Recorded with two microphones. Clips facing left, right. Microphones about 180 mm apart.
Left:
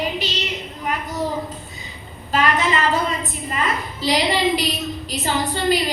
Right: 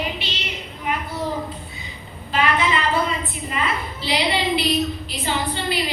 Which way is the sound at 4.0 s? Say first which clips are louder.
Left 4 dB; 40° left (ahead or behind).